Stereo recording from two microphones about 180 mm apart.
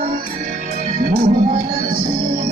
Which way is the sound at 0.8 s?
45° right (ahead or behind).